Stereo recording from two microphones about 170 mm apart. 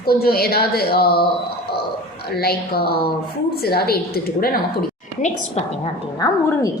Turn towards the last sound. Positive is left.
turn(degrees=20)  # may be behind; listen again after turning